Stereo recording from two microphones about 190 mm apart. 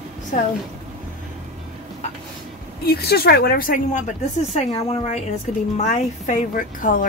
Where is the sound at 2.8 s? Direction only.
55° left (ahead or behind).